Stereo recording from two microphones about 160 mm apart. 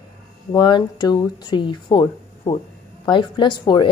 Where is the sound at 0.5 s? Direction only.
30° left (ahead or behind).